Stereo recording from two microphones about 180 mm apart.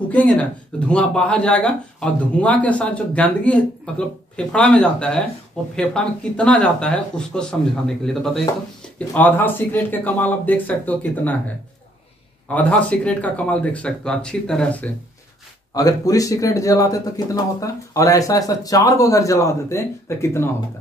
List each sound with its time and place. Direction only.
0.1 s speech: 10° left (ahead or behind)
12.5 s speech: 5° left (ahead or behind)
15.7 s speech: 20° left (ahead or behind)